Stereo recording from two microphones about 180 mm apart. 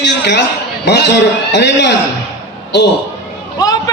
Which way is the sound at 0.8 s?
70° left (ahead or behind).